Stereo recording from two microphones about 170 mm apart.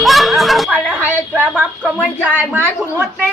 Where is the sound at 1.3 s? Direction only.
10° right (ahead or behind).